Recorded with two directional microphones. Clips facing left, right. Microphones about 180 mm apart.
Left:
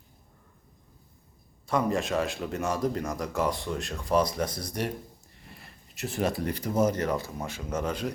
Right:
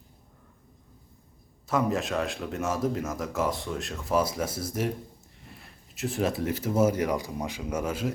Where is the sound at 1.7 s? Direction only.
Centre (ahead or behind).